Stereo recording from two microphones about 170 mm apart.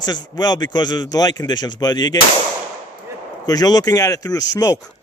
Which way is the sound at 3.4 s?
25° left (ahead or behind).